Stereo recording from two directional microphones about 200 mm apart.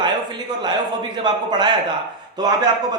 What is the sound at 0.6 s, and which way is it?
Speech, 20° right (ahead or behind).